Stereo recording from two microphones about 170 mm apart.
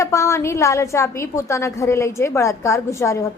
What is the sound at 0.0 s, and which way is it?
A woman's voice, 15° left (ahead or behind).